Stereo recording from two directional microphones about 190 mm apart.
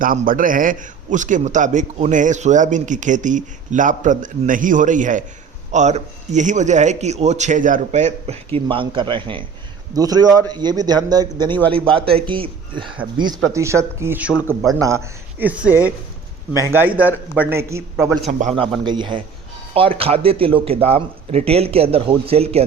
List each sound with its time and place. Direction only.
0.0 s a man's voice: 45° right (ahead or behind)
8.5 s a man's voice: 25° right (ahead or behind); by 14.8 s 5° right (ahead or behind)
14.8 s speech: 15° right (ahead or behind)
18.3 s a man's voice: 40° right (ahead or behind)